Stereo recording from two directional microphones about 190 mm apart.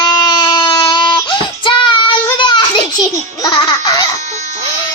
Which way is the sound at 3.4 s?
20° left (ahead or behind).